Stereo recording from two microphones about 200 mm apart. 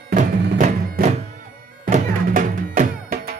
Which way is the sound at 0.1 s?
40° right (ahead or behind).